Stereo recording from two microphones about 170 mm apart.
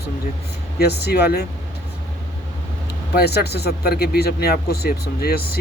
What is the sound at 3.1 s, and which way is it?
Speech, 75° left (ahead or behind).